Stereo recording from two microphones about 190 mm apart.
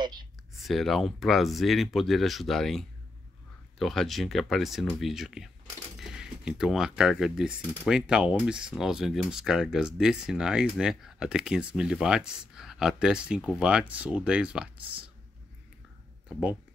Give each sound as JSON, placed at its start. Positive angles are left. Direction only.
{"t": 0.0, "sound": "speech", "side_deg": -25}
{"t": 0.6, "sound": "speech", "side_deg": 0}
{"t": 3.8, "sound": "speech", "side_deg": 0}
{"t": 16.3, "sound": "speech", "side_deg": -5}